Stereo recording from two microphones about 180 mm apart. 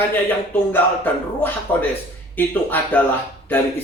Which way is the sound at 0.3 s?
10° left (ahead or behind).